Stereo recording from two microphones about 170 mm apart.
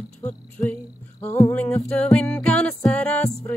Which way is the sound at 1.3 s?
15° left (ahead or behind).